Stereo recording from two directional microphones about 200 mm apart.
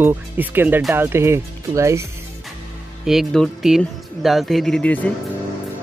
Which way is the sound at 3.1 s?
Centre (ahead or behind).